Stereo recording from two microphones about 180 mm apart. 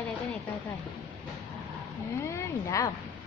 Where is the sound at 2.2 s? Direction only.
15° left (ahead or behind).